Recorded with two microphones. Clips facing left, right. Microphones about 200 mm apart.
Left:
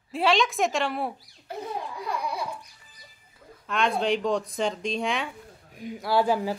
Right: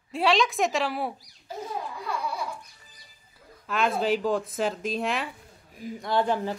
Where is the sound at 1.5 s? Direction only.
60° left (ahead or behind).